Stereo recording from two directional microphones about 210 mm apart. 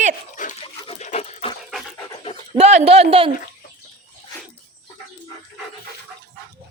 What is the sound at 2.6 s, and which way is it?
Speech, 30° right (ahead or behind).